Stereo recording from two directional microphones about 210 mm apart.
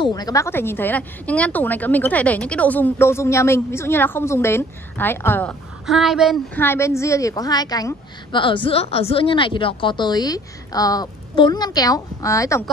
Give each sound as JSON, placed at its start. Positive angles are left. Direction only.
{"t": 0.0, "sound": "a woman's voice", "side_deg": 15}
{"t": 5.9, "sound": "speech", "side_deg": 0}
{"t": 6.6, "sound": "a woman's voice", "side_deg": 10}